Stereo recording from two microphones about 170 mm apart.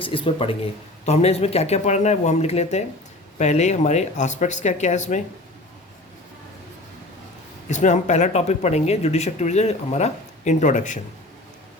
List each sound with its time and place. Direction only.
0.0 s speech: 30° left (ahead or behind)
7.7 s speech: 45° left (ahead or behind)